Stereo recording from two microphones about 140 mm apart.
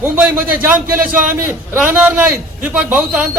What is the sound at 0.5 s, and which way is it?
A man's voice, 15° right (ahead or behind).